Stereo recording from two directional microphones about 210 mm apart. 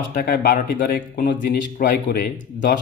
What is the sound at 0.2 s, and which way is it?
Speech, 50° left (ahead or behind).